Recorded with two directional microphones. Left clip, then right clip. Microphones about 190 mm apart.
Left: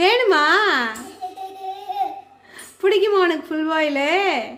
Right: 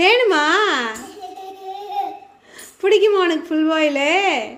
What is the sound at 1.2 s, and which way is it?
Music, 15° left (ahead or behind).